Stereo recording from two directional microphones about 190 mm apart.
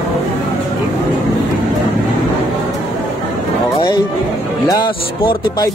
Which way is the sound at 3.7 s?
20° left (ahead or behind).